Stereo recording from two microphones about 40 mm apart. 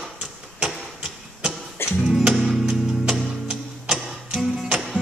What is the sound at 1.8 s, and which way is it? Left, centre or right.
Music, left.